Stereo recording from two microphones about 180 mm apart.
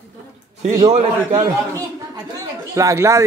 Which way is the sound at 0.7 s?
20° right (ahead or behind).